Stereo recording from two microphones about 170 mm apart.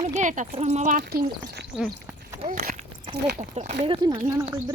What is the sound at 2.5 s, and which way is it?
Horse, 50° right (ahead or behind).